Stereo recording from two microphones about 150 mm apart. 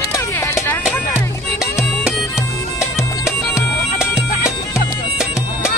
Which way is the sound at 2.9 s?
20° left (ahead or behind).